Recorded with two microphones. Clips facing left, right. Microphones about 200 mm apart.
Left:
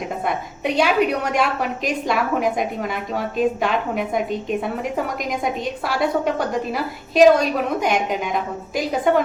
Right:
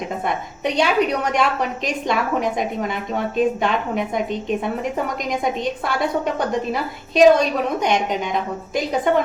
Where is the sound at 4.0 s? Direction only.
Centre (ahead or behind).